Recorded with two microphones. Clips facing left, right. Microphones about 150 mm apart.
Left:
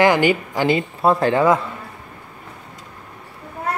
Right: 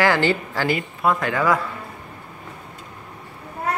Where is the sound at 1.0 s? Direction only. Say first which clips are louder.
Left 5 dB; 30° left (ahead or behind).